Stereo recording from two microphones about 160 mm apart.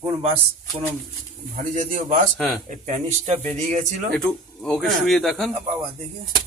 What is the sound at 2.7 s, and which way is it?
Speech, 50° right (ahead or behind).